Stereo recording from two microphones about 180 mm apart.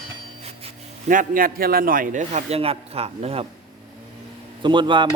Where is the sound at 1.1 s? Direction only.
50° right (ahead or behind); by 3.5 s 35° right (ahead or behind).